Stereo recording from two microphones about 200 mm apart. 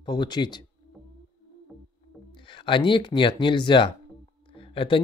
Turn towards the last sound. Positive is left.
turn(degrees=25)  # may be behind; listen again after turning